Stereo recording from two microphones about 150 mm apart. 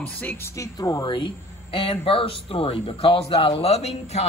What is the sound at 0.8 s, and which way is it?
Speech, 25° left (ahead or behind).